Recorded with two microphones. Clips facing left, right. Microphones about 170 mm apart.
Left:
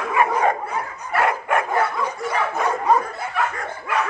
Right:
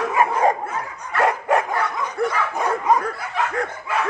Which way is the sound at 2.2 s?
60° right (ahead or behind).